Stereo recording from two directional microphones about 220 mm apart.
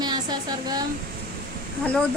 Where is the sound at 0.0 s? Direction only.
20° right (ahead or behind).